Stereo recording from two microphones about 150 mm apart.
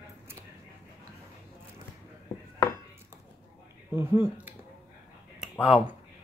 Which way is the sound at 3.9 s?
15° right (ahead or behind).